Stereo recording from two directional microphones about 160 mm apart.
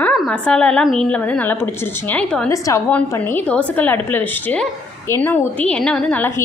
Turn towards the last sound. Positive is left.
turn(degrees=10)  # may be behind; listen again after turning